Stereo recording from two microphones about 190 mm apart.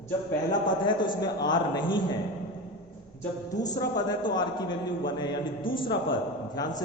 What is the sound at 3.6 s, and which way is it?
A man's voice, 20° left (ahead or behind).